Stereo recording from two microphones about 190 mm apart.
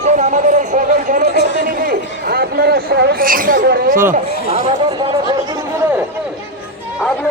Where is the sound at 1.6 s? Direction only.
50° right (ahead or behind).